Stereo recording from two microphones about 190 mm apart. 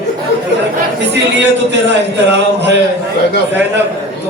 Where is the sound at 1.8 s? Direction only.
65° right (ahead or behind).